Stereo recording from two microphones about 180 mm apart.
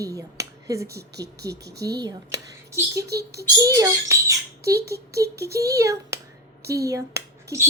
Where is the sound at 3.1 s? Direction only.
65° right (ahead or behind).